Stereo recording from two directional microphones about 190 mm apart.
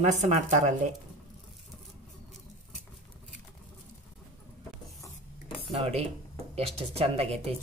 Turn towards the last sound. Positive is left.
turn(degrees=-35)  # may be behind; listen again after turning